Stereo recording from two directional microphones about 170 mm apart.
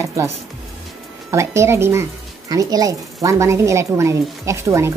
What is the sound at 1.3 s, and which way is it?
Speech, 15° right (ahead or behind).